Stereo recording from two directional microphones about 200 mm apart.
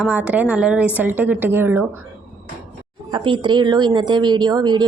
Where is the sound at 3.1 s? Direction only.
25° right (ahead or behind).